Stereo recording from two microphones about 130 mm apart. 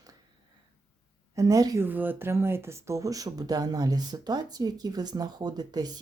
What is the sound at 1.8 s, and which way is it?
Speech, 15° right (ahead or behind).